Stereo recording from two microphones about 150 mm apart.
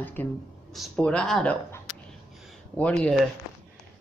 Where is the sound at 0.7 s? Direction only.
Centre (ahead or behind).